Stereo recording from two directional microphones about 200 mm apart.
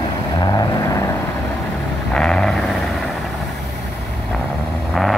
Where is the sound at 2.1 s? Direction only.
5° left (ahead or behind).